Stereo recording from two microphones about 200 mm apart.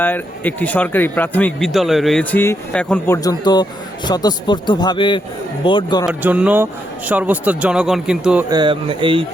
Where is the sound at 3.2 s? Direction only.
20° left (ahead or behind).